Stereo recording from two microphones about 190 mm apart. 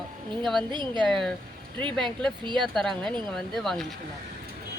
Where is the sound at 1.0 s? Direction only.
Centre (ahead or behind).